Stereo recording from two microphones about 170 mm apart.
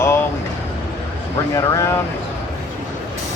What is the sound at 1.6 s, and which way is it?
Speech, 20° left (ahead or behind).